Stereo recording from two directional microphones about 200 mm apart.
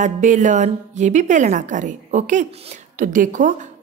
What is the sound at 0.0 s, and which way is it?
A woman's voice, 40° right (ahead or behind).